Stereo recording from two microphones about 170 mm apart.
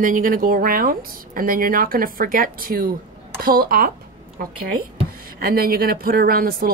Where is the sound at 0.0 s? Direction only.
55° right (ahead or behind).